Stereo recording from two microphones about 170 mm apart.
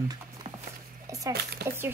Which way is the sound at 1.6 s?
70° right (ahead or behind).